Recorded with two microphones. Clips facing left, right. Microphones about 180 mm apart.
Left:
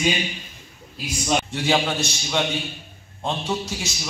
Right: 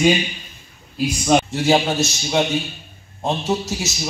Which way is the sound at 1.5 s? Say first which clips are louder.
Right 5 dB; 40° right (ahead or behind).